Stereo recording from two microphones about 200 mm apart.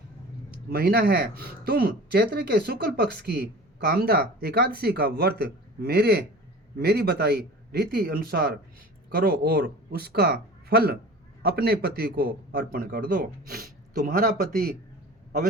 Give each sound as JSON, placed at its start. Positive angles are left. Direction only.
{"t": 0.7, "sound": "speech", "side_deg": -50}